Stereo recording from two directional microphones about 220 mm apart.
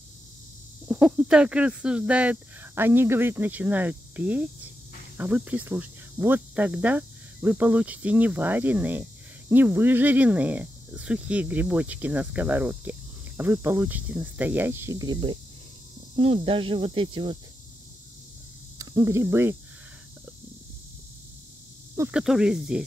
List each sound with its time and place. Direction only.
0.8 s speech: 5° right (ahead or behind); by 17.4 s 20° right (ahead or behind)
18.8 s speech: 15° right (ahead or behind)
21.9 s speech: 10° right (ahead or behind)